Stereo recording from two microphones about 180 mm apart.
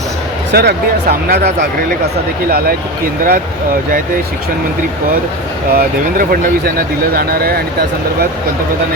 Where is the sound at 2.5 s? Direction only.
60° right (ahead or behind).